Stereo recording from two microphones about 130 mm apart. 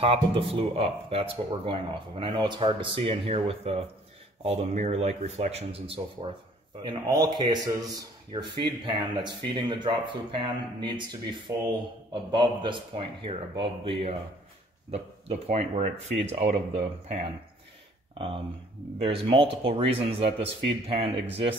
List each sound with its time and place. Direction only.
0.0 s speech: 45° right (ahead or behind)
6.8 s speech: 35° right (ahead or behind)